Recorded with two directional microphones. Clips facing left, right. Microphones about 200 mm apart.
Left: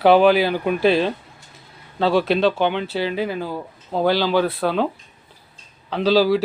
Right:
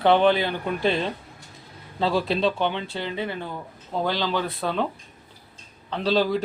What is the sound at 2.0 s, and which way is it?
Speech, 70° left (ahead or behind).